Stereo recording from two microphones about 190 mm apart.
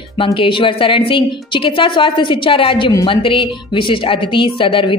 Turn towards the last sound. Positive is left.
turn(degrees=25)  # may be behind; listen again after turning